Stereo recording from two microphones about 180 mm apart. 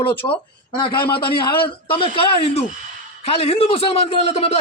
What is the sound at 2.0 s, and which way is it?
A man's voice, 30° left (ahead or behind).